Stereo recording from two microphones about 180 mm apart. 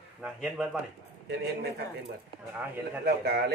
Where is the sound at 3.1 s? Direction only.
65° right (ahead or behind).